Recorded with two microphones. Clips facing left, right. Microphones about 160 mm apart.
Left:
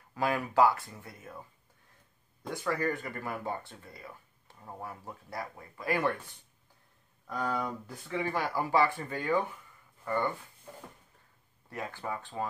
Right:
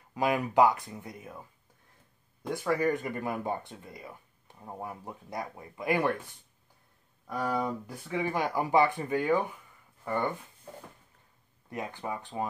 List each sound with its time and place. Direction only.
0.1 s speech: 15° right (ahead or behind)
2.6 s speech: 15° right (ahead or behind)
7.2 s speech: 15° right (ahead or behind)
11.7 s speech: 20° right (ahead or behind)